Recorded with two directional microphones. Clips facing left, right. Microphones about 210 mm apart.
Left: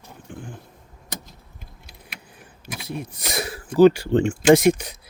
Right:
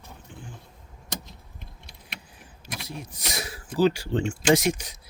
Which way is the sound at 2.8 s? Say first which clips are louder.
Left 8 dB; 55° left (ahead or behind).